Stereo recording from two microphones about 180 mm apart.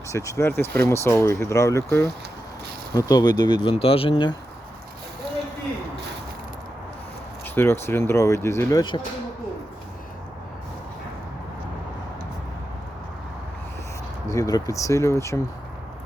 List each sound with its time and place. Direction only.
0.1 s speech: 15° left (ahead or behind)
7.4 s speech: 10° left (ahead or behind)
14.3 s speech: 20° left (ahead or behind)